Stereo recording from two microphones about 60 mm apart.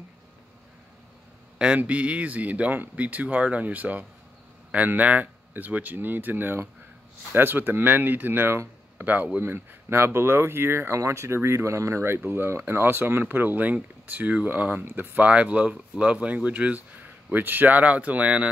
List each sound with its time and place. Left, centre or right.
1.8 s speech: right